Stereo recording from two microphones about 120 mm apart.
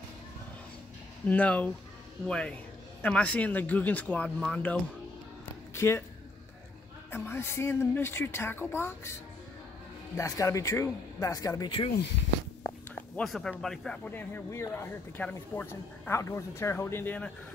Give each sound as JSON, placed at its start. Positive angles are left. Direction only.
{"t": 1.2, "sound": "speech", "side_deg": 10}
{"t": 5.8, "sound": "speech", "side_deg": 20}
{"t": 7.1, "sound": "a woman's voice", "side_deg": 20}
{"t": 10.1, "sound": "a woman's voice", "side_deg": 25}
{"t": 12.6, "sound": "speech", "side_deg": 5}